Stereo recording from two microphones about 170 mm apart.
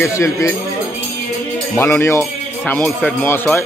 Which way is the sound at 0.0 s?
15° left (ahead or behind).